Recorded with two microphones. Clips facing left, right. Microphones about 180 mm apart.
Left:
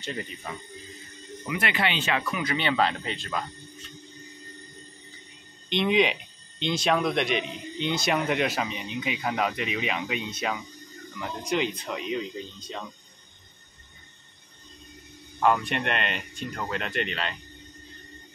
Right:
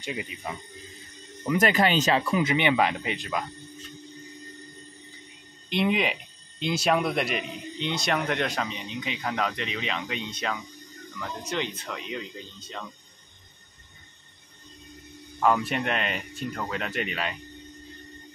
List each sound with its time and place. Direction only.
0.0 s speech: 10° right (ahead or behind)
1.5 s speech: 40° right (ahead or behind)
2.5 s speech: 15° right (ahead or behind)
5.7 s speech: 5° right (ahead or behind); by 12.8 s 15° left (ahead or behind)
15.4 s speech: 5° right (ahead or behind)